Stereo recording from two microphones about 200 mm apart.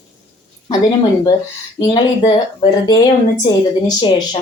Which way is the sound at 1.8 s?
20° left (ahead or behind).